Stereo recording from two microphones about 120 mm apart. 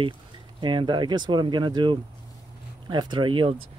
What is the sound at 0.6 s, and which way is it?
Speech, 40° right (ahead or behind).